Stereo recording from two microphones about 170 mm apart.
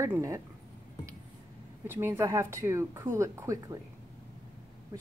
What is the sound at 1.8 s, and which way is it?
Speech, 15° right (ahead or behind).